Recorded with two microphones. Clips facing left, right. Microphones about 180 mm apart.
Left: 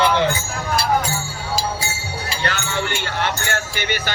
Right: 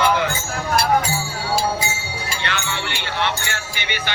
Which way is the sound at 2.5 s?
40° left (ahead or behind).